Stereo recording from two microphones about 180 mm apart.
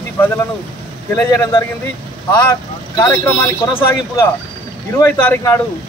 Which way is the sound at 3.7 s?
15° left (ahead or behind).